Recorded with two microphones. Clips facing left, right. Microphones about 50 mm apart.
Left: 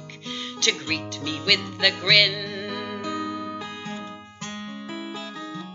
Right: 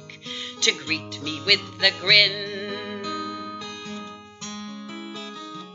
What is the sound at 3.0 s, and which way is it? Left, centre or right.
Music, centre.